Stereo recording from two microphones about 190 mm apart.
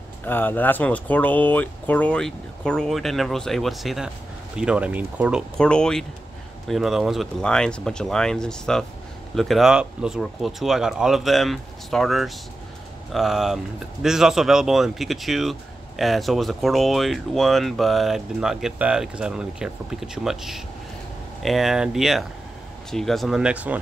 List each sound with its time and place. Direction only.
0.3 s speech: 10° left (ahead or behind); by 5.4 s 5° right (ahead or behind)
5.6 s speech: 5° left (ahead or behind)